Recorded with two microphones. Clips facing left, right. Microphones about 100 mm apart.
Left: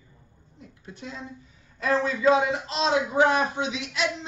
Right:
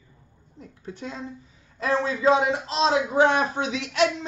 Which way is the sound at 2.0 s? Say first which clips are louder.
Right 1 dB; 30° right (ahead or behind).